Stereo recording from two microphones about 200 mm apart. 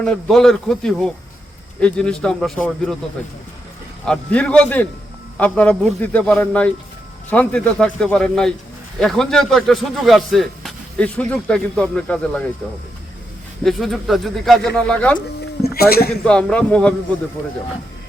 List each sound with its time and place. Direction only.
0.0 s speech: 5° left (ahead or behind)
4.0 s a man's voice: 5° left (ahead or behind)
13.7 s speech: centre (ahead or behind)
15.6 s a man's voice: 50° left (ahead or behind)
16.2 s speech: 5° left (ahead or behind)